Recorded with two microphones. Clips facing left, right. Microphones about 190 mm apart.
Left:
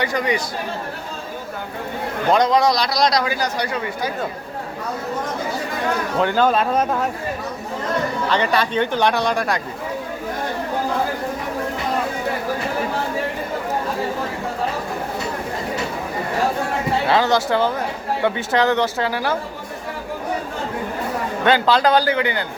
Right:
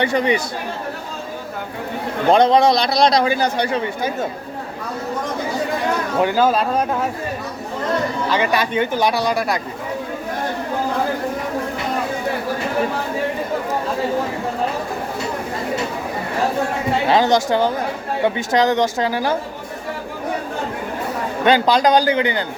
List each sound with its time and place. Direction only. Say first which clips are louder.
0.0 s a man's voice: right 3 dB; 25° right (ahead or behind)
2.3 s a man's voice: right 3 dB; 25° right (ahead or behind)
6.1 s speech: right 1 dB; 10° right (ahead or behind)
8.3 s speech: even; 10° right (ahead or behind)
17.1 s speech: right 2 dB; 15° right (ahead or behind)
21.4 s speech: right 2 dB; 15° right (ahead or behind)